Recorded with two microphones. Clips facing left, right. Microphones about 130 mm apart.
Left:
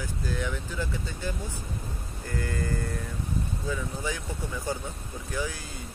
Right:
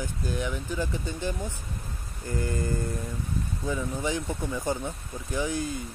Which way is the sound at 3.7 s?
20° right (ahead or behind).